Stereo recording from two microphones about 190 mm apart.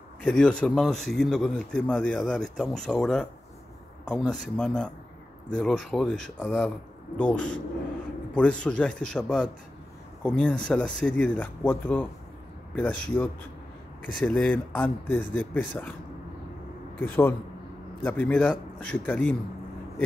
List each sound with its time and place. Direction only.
0.2 s a man's voice: 5° left (ahead or behind)
17.0 s speech: 10° left (ahead or behind)